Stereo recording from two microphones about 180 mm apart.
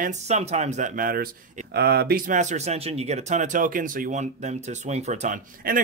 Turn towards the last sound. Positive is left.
turn(degrees=-45)  # may be behind; listen again after turning